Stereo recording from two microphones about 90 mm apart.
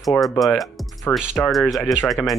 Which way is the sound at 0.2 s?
Centre (ahead or behind).